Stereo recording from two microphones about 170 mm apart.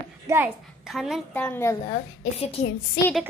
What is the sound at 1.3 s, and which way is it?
Speech, 10° left (ahead or behind).